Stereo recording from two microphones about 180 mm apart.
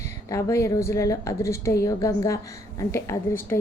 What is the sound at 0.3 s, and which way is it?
A woman's voice, 15° left (ahead or behind).